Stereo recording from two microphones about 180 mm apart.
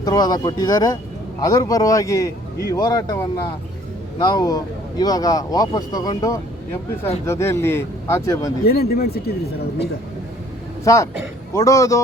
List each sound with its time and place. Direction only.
0.0 s speech: 20° left (ahead or behind)
8.6 s speech: 60° left (ahead or behind)
10.8 s speech: 15° left (ahead or behind)